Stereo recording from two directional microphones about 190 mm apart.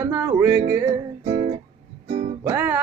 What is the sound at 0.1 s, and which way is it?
Music, 10° right (ahead or behind).